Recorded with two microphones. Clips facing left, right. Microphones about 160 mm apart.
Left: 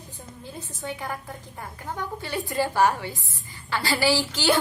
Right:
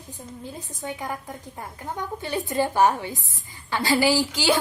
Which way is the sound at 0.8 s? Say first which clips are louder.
Right 1 dB; 15° right (ahead or behind).